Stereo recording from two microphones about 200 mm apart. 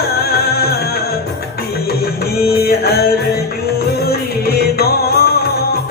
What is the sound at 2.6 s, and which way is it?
Music, 50° left (ahead or behind).